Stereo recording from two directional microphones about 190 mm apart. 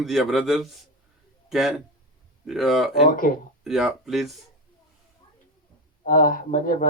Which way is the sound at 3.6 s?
Centre (ahead or behind).